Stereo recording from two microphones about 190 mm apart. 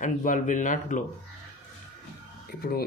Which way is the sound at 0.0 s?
45° left (ahead or behind).